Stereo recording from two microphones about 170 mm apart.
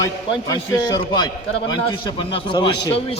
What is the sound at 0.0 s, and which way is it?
A man's voice, 20° left (ahead or behind).